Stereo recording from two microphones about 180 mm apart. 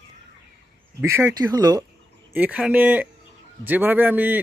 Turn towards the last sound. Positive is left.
turn(degrees=-10)  # may be behind; listen again after turning